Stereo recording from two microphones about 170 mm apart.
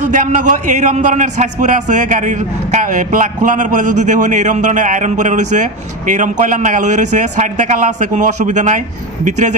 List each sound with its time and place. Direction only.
0.1 s a man's voice: 50° right (ahead or behind)